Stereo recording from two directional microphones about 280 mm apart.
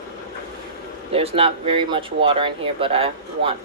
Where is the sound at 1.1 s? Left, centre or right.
Centre.